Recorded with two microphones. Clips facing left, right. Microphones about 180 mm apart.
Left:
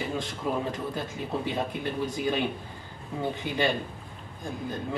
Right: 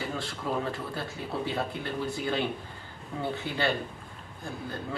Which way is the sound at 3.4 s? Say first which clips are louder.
Left 3 dB; 15° left (ahead or behind).